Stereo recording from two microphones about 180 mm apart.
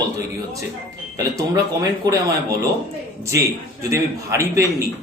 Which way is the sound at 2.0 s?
20° right (ahead or behind).